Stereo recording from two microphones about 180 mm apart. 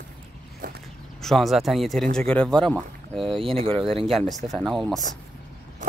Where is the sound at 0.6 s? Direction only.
45° right (ahead or behind).